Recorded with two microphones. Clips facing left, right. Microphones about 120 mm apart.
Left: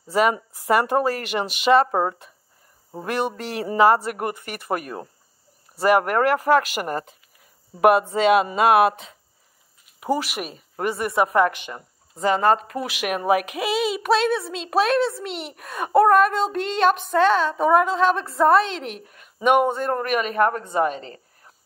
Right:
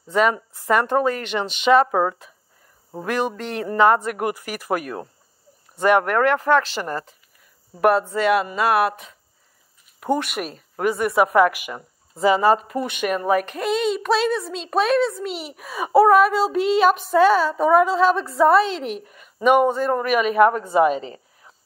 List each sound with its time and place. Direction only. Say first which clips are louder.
0.1 s speech: right 1 dB; 5° left (ahead or behind); by 9.1 s 25° left (ahead or behind)
9.9 s speech: right 1 dB; 5° left (ahead or behind); by 21.2 s 15° right (ahead or behind)